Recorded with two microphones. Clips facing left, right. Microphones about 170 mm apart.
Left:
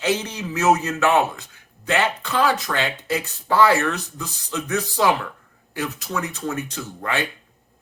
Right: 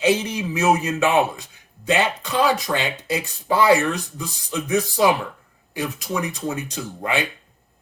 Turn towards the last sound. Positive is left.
turn(degrees=-15)  # may be behind; listen again after turning